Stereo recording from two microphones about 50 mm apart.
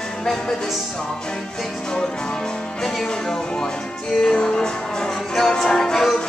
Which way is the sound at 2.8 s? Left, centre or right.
Centre.